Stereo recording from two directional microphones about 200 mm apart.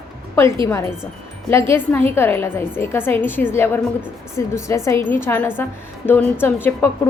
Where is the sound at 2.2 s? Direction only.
10° left (ahead or behind).